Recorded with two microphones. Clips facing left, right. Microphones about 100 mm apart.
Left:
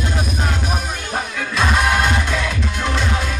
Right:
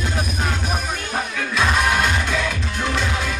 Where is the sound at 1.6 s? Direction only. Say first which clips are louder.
Left 2 dB; 35° left (ahead or behind).